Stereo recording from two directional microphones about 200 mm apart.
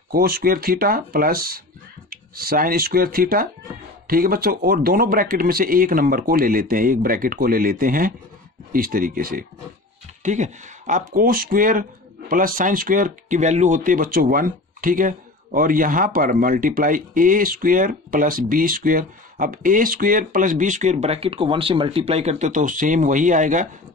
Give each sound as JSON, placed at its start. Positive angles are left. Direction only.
{"t": 0.1, "sound": "speech", "side_deg": -50}